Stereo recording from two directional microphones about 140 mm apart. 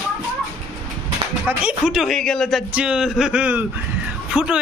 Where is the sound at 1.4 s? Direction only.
5° right (ahead or behind).